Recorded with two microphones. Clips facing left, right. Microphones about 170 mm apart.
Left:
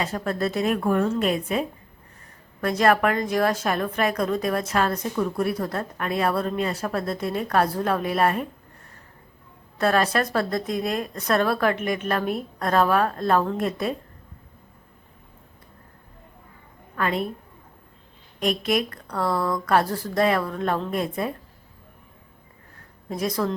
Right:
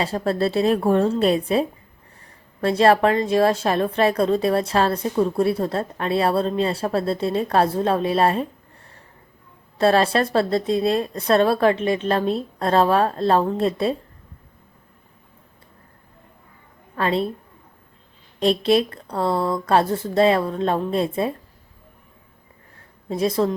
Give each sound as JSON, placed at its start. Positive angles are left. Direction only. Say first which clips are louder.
{"t": 0.0, "sound": "a woman's voice", "louder": "right 4 dB", "side_deg": -30}
{"t": 9.7, "sound": "speech", "louder": "right 4 dB", "side_deg": -30}
{"t": 17.0, "sound": "speech", "louder": "right 4 dB", "side_deg": -30}
{"t": 18.3, "sound": "speech", "louder": "right 6 dB", "side_deg": -30}
{"t": 23.0, "sound": "speech", "louder": "right 5 dB", "side_deg": -30}